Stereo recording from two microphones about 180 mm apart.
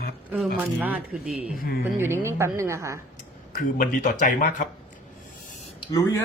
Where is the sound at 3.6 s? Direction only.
45° left (ahead or behind).